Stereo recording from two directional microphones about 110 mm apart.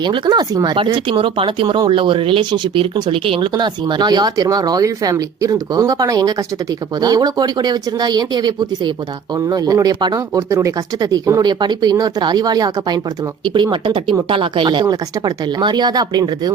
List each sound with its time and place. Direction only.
0.0 s speech: 40° right (ahead or behind)
10.5 s speech: 30° right (ahead or behind)